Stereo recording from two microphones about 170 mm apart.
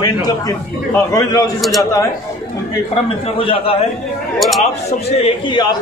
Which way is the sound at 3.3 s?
30° left (ahead or behind).